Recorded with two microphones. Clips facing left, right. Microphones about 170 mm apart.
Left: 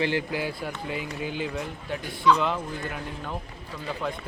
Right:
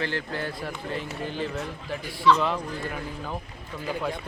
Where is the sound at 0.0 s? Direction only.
15° left (ahead or behind).